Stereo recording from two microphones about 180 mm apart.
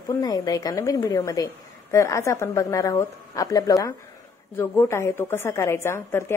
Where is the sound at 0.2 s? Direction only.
20° left (ahead or behind).